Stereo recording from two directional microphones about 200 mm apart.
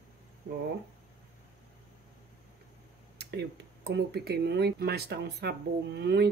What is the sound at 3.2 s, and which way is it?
Speech, 55° right (ahead or behind).